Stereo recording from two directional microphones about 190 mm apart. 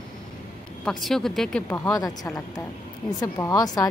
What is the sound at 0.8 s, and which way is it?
A woman's voice, centre (ahead or behind).